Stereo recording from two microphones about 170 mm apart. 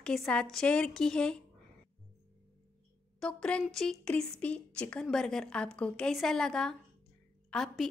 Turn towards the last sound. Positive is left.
turn(degrees=0)  # may be behind; listen again after turning